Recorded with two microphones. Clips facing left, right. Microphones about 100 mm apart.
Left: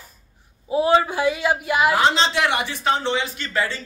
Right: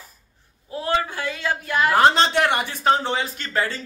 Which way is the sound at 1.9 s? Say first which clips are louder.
Right 2 dB; 50° right (ahead or behind).